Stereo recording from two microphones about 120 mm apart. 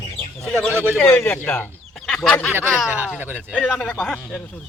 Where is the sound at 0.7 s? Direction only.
20° right (ahead or behind).